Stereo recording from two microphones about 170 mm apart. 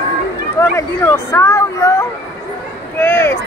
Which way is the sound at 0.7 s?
15° left (ahead or behind).